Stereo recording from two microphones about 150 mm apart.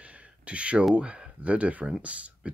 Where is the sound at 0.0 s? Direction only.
10° right (ahead or behind).